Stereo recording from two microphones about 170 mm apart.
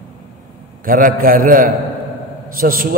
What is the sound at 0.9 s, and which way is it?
A man's voice, 55° right (ahead or behind).